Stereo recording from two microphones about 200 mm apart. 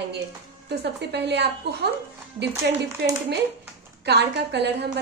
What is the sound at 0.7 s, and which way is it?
Speech, 55° right (ahead or behind).